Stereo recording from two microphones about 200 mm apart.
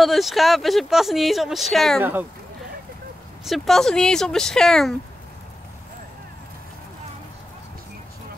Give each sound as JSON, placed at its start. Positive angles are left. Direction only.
{"t": 0.0, "sound": "speech", "side_deg": 0}
{"t": 2.0, "sound": "speech", "side_deg": -10}
{"t": 3.4, "sound": "speech", "side_deg": 0}